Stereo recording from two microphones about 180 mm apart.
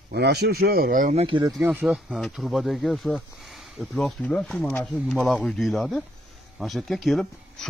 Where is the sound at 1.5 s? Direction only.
5° right (ahead or behind).